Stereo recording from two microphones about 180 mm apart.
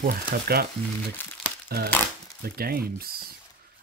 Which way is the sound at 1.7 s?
60° right (ahead or behind).